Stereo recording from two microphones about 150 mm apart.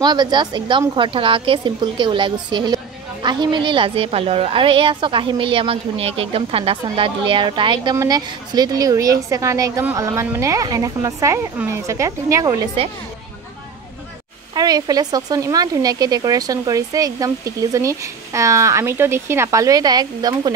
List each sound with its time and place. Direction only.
0.0 s a woman's voice: 30° right (ahead or behind)
14.5 s speech: 25° right (ahead or behind)